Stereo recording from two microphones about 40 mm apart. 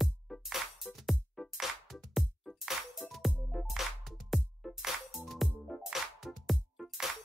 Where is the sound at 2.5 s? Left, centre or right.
Centre.